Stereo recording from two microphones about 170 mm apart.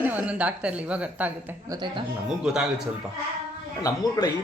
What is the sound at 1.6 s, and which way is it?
Speech, 25° right (ahead or behind).